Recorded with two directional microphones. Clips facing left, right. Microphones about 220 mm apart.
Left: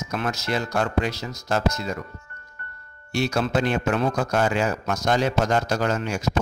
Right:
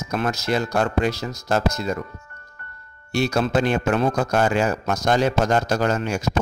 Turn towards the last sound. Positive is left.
turn(degrees=-45)  # may be behind; listen again after turning